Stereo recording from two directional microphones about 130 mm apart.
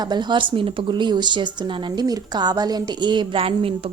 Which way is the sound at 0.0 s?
35° right (ahead or behind).